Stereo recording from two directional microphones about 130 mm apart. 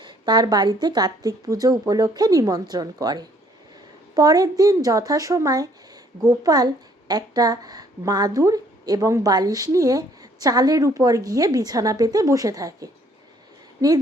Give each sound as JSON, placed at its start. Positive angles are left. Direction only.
{"t": 0.0, "sound": "a woman's voice", "side_deg": -35}